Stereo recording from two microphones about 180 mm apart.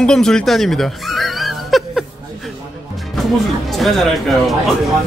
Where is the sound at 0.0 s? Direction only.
5° left (ahead or behind).